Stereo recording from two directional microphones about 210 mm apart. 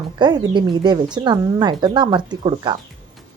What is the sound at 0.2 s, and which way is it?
A woman's voice, 20° right (ahead or behind).